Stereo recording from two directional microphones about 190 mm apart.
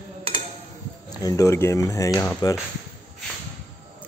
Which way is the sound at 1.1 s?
20° left (ahead or behind).